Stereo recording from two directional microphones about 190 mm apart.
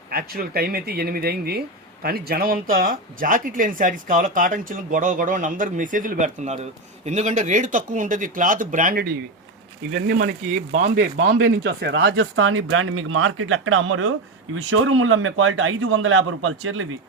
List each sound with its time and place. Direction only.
0.1 s speech: 50° right (ahead or behind)
11.3 s speech: 75° right (ahead or behind); by 16.8 s 90° right